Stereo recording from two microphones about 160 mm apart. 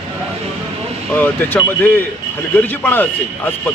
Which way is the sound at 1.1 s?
10° left (ahead or behind).